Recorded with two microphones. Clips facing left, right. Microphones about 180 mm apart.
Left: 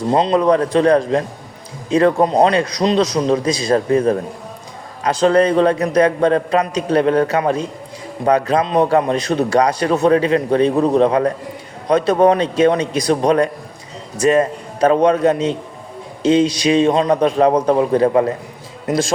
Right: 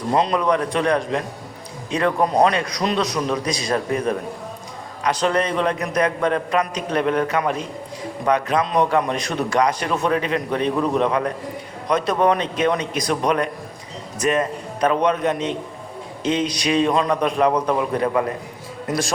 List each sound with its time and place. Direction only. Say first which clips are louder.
0.1 s a man's voice: left 5 dB; 25° left (ahead or behind)